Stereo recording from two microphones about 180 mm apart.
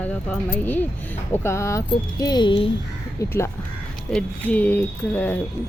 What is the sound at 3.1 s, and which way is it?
Speech, 15° left (ahead or behind).